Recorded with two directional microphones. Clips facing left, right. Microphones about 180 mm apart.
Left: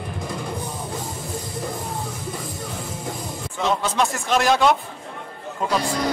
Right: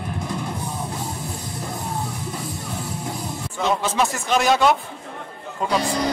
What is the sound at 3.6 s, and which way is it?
A man's voice, centre (ahead or behind).